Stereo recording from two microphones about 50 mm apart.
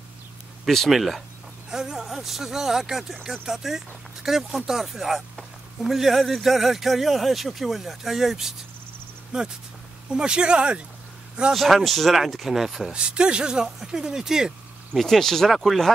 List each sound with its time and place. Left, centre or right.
0.7 s a man's voice: centre
11.5 s a man's voice: centre
12.9 s speech: centre
15.0 s a man's voice: centre